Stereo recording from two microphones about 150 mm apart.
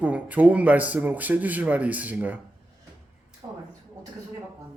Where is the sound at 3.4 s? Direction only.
20° right (ahead or behind).